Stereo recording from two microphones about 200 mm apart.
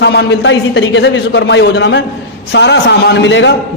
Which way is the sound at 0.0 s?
60° left (ahead or behind).